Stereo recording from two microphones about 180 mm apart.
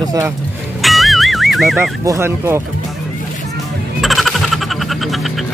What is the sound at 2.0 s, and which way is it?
Speech, 15° right (ahead or behind).